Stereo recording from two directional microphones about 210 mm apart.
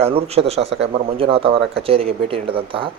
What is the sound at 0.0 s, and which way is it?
Speech, 30° right (ahead or behind).